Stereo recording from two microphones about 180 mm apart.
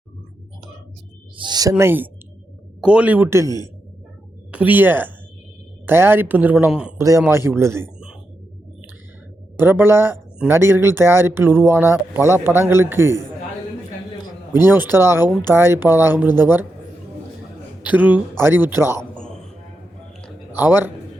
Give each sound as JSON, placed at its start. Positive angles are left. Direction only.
{"t": 1.4, "sound": "speech", "side_deg": -25}
{"t": 1.7, "sound": "speech", "side_deg": -10}
{"t": 4.5, "sound": "speech", "side_deg": -10}
{"t": 7.0, "sound": "speech", "side_deg": -15}
{"t": 9.6, "sound": "speech", "side_deg": -10}
{"t": 14.5, "sound": "speech", "side_deg": -10}
{"t": 17.8, "sound": "speech", "side_deg": -10}
{"t": 19.1, "sound": "a sound", "side_deg": 5}
{"t": 20.6, "sound": "speech", "side_deg": -10}